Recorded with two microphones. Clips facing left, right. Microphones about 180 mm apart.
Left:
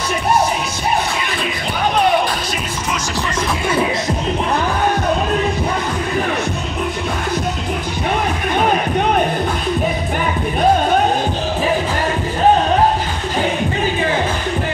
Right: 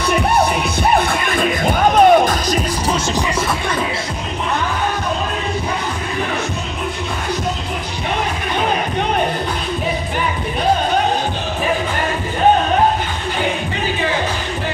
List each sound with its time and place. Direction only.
1.4 s music: 45° right (ahead or behind)